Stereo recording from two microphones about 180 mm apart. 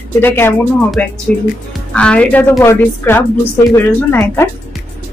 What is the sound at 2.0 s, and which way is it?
Speech, 5° left (ahead or behind).